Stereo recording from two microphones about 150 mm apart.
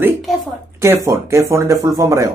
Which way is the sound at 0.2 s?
Centre (ahead or behind).